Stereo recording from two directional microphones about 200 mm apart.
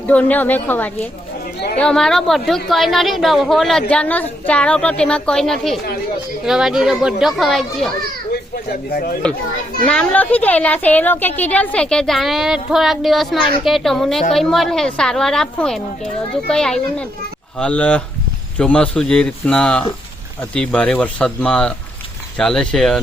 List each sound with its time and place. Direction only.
0.1 s a woman's voice: 10° left (ahead or behind)
8.3 s speech: 50° left (ahead or behind)
9.8 s a woman's voice: 5° left (ahead or behind)